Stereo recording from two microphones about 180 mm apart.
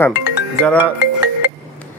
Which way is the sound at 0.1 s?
10° right (ahead or behind).